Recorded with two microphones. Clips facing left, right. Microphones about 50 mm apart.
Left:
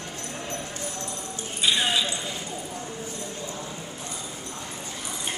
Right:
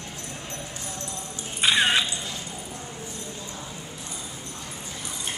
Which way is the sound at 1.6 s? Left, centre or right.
Right.